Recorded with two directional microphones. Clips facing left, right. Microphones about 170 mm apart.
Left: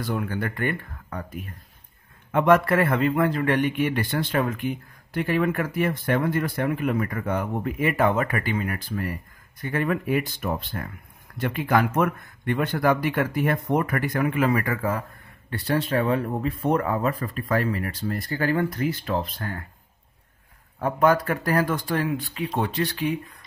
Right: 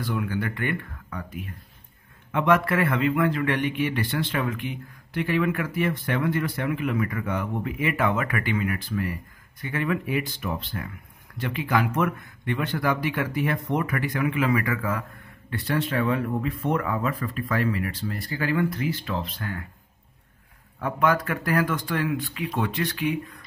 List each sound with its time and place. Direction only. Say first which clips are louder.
0.0 s a man's voice: even; 45° left (ahead or behind)
20.8 s speech: left 3 dB; 35° left (ahead or behind)